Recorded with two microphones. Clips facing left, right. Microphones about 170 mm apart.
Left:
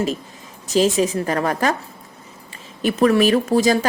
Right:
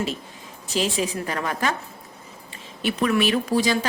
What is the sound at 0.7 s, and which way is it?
A woman's voice, 40° left (ahead or behind).